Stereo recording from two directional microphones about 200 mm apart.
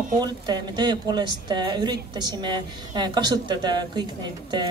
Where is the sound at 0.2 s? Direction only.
20° right (ahead or behind).